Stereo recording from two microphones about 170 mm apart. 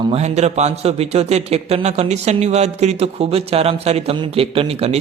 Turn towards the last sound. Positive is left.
turn(degrees=-35)  # may be behind; listen again after turning